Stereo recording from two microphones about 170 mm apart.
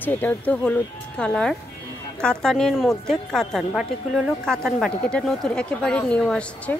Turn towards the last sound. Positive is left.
turn(degrees=5)  # may be behind; listen again after turning